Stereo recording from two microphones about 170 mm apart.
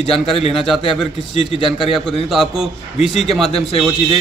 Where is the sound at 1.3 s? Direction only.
35° left (ahead or behind).